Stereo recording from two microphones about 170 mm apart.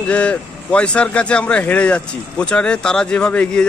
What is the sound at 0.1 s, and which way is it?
Speech, 5° left (ahead or behind).